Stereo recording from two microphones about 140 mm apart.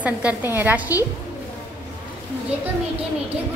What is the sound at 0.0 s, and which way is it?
Speech, 10° right (ahead or behind).